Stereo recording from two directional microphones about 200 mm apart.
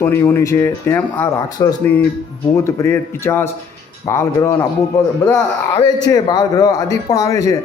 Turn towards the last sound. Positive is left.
turn(degrees=15)  # may be behind; listen again after turning